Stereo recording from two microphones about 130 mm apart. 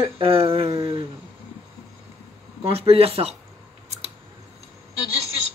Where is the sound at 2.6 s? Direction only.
50° right (ahead or behind).